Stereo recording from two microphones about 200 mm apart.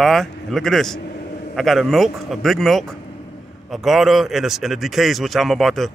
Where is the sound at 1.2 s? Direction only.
45° left (ahead or behind).